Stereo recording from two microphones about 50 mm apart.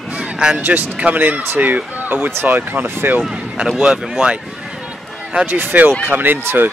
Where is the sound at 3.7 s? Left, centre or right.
Centre.